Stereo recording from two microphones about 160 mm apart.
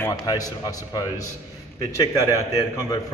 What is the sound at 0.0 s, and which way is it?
A man's voice, 20° left (ahead or behind).